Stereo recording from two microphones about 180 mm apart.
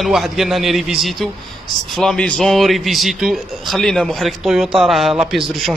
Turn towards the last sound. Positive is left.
turn(degrees=0)  # may be behind; listen again after turning